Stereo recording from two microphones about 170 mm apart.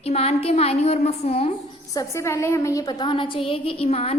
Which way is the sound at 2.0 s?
15° left (ahead or behind).